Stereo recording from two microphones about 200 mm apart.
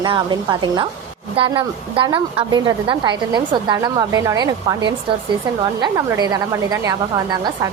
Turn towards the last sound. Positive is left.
turn(degrees=-20)  # may be behind; listen again after turning